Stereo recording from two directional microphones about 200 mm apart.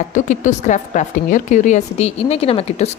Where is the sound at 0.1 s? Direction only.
40° left (ahead or behind).